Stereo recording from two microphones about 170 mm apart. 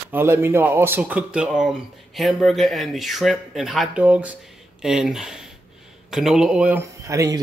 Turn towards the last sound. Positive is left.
turn(degrees=-20)  # may be behind; listen again after turning